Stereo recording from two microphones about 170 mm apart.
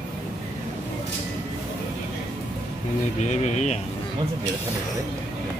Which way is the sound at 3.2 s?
45° left (ahead or behind).